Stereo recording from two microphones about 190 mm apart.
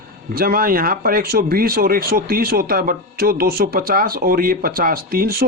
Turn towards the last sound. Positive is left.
turn(degrees=-50)  # may be behind; listen again after turning